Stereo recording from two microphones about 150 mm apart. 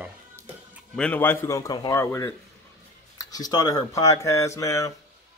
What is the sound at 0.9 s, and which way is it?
Speech, 10° left (ahead or behind).